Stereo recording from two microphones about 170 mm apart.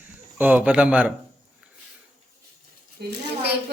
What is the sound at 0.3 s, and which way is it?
Speech, 10° right (ahead or behind).